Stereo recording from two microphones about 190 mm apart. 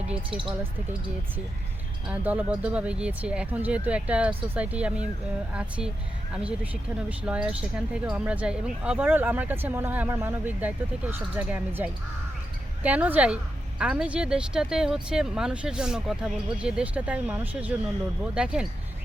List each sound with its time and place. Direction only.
0.3 s speech: 25° right (ahead or behind)
2.0 s a woman's voice: 5° right (ahead or behind)
6.9 s a woman's voice: 5° right (ahead or behind)